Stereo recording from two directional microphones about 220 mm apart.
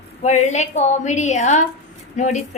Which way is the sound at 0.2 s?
30° left (ahead or behind).